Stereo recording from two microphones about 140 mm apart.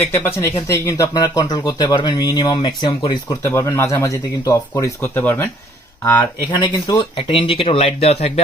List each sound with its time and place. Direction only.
0.1 s speech: 15° left (ahead or behind); by 3.3 s 30° left (ahead or behind)
3.4 s speech: 20° left (ahead or behind)
6.5 s speech: 30° left (ahead or behind)
7.2 s speech: 40° left (ahead or behind)